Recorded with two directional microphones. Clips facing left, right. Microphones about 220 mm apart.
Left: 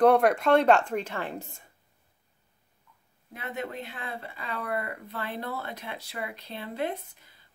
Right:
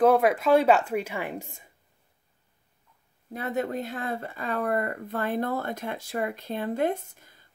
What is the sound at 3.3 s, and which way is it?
Speech, 40° right (ahead or behind).